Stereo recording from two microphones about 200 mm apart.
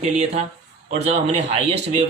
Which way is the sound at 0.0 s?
30° right (ahead or behind).